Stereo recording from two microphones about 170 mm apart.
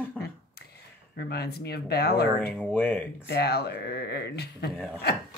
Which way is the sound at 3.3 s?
70° left (ahead or behind).